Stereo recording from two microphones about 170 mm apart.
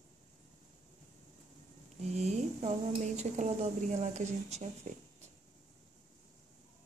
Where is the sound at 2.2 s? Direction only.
40° right (ahead or behind).